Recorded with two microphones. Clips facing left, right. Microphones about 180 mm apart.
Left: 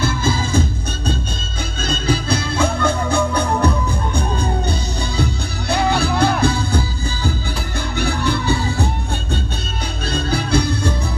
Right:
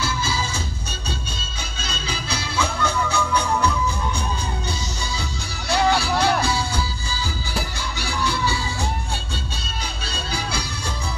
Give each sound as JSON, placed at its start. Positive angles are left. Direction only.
{"t": 0.0, "sound": "music", "side_deg": 55}
{"t": 8.0, "sound": "music", "side_deg": 60}
{"t": 10.0, "sound": "music", "side_deg": 60}